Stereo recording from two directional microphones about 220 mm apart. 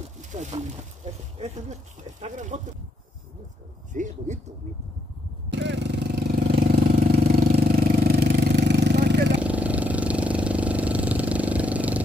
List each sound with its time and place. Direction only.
0.2 s a sound: 35° right (ahead or behind)
1.0 s speech: 30° right (ahead or behind)
3.9 s speech: 35° right (ahead or behind)
5.5 s vehicle: 55° right (ahead or behind)
9.4 s vehicle: 5° right (ahead or behind)